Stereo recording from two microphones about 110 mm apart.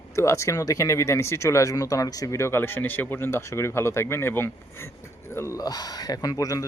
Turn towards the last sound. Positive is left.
turn(degrees=30)  # may be behind; listen again after turning